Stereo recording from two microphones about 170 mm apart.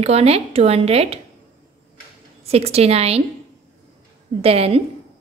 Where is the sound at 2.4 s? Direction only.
35° right (ahead or behind).